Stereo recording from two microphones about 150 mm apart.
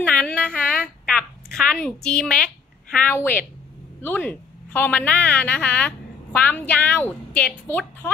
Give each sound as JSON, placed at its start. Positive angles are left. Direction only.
{"t": 0.0, "sound": "a woman's voice", "side_deg": 10}